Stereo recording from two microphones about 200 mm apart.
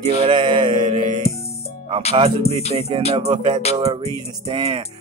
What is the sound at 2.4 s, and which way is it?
Music, 30° left (ahead or behind).